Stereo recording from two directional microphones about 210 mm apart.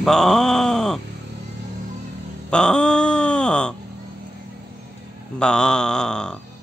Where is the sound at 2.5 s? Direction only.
5° left (ahead or behind).